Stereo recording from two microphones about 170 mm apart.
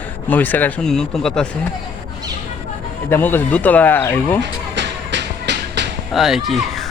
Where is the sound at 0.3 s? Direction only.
10° left (ahead or behind).